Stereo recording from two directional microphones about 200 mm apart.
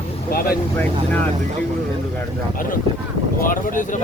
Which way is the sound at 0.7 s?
5° left (ahead or behind).